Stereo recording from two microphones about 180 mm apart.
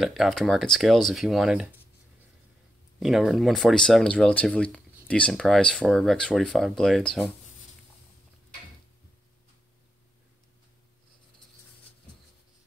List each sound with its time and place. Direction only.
0.0 s speech: centre (ahead or behind)
3.0 s speech: centre (ahead or behind)